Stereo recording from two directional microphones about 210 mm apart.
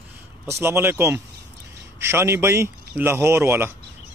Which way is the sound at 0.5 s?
10° right (ahead or behind).